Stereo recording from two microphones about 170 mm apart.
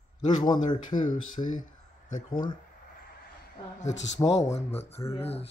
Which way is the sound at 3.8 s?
45° left (ahead or behind).